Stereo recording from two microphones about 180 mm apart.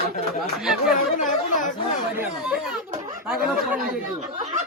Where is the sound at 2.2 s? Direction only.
10° right (ahead or behind).